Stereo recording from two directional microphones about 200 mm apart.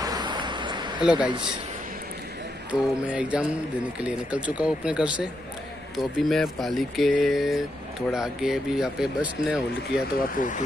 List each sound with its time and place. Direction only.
0.0 s a sound: 20° right (ahead or behind)
2.7 s mantra: 5° right (ahead or behind)
4.0 s speech: 5° right (ahead or behind)
9.8 s speech: 40° left (ahead or behind)